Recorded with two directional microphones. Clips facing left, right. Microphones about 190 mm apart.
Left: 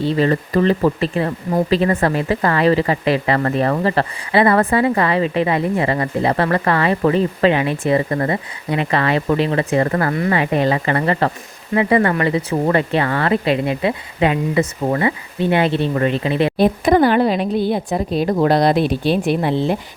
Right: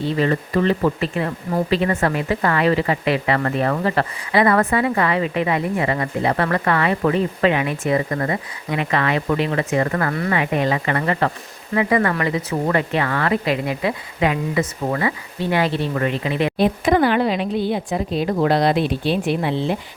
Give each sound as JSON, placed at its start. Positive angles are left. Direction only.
{"t": 0.0, "sound": "speech", "side_deg": 35}